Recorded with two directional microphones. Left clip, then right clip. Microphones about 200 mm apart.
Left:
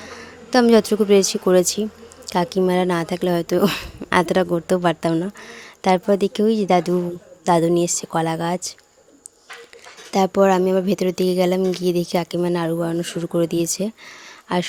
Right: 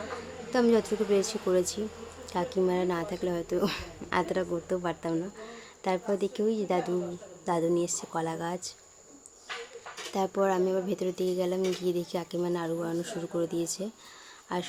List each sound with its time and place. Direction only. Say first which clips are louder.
0.5 s speech: left 10 dB; 40° left (ahead or behind)
10.1 s speech: left 12 dB; 40° left (ahead or behind)